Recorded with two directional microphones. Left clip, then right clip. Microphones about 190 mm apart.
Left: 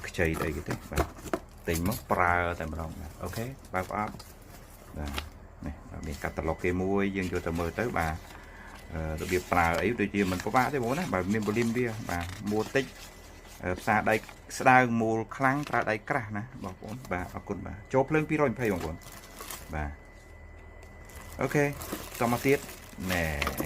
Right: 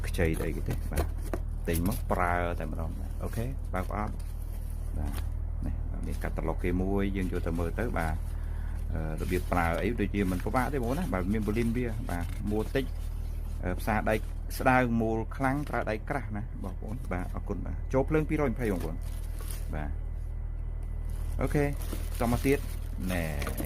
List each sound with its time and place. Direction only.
0.0 s speech: 45° right (ahead or behind)
1.3 s a sound: 10° right (ahead or behind)
2.0 s speech: 45° right (ahead or behind)
6.2 s speech: 40° right (ahead or behind)
21.3 s speech: 35° right (ahead or behind)